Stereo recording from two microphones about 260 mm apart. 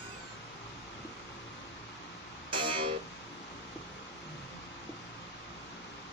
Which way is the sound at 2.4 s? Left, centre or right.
Centre.